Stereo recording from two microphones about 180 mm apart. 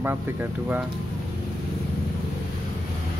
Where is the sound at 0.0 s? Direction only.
10° right (ahead or behind).